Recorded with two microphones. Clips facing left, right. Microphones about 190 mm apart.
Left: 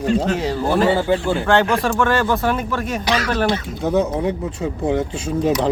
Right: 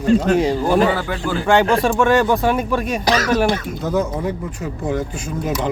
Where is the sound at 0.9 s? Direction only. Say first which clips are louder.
Left 4 dB; 30° left (ahead or behind).